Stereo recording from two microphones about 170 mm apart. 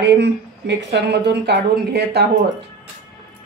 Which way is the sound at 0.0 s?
90° right.